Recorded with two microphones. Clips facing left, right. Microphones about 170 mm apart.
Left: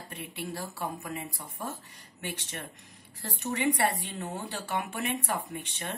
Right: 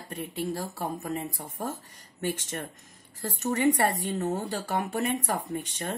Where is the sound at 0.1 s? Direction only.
45° right (ahead or behind).